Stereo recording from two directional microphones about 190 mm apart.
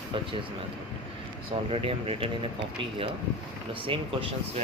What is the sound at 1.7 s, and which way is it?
Speech, 30° right (ahead or behind).